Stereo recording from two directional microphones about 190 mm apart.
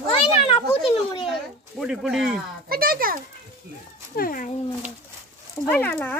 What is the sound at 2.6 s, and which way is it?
Speech, 50° right (ahead or behind).